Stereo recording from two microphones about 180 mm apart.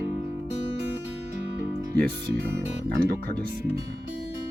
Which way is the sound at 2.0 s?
65° right (ahead or behind).